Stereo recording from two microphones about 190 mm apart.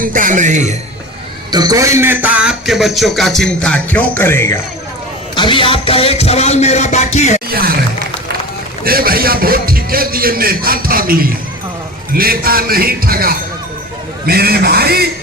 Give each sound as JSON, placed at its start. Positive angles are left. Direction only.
{"t": 0.0, "sound": "a man's voice", "side_deg": -45}
{"t": 1.5, "sound": "a man's voice", "side_deg": -20}
{"t": 5.3, "sound": "speech", "side_deg": 25}
{"t": 7.5, "sound": "a man's voice", "side_deg": -50}